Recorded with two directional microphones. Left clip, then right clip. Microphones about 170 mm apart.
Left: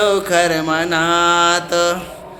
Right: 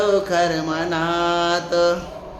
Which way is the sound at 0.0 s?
25° left (ahead or behind).